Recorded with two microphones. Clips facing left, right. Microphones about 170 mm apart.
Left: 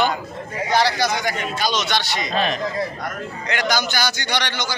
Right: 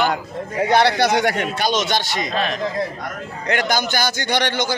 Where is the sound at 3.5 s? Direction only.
50° right (ahead or behind).